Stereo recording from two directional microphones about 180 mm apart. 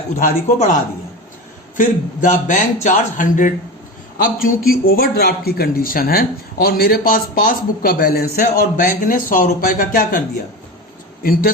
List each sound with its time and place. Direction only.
0.2 s a man's voice: 45° left (ahead or behind)
1.7 s a man's voice: 45° left (ahead or behind)
11.2 s a man's voice: 55° left (ahead or behind)